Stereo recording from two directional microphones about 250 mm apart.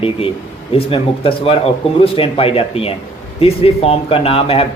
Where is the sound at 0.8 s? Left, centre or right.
Left.